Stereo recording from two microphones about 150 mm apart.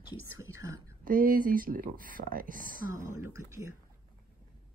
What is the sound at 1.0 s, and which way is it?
Speech, 70° right (ahead or behind).